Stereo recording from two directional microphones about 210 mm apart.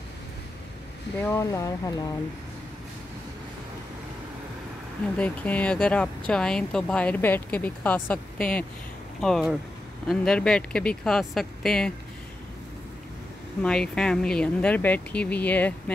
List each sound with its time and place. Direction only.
1.2 s speech: 15° left (ahead or behind)
5.1 s speech: 5° left (ahead or behind)
13.6 s speech: 5° left (ahead or behind)